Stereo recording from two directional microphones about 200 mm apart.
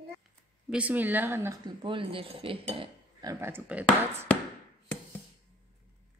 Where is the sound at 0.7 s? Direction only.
5° right (ahead or behind).